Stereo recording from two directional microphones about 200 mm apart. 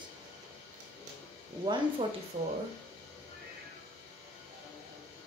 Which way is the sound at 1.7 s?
20° right (ahead or behind).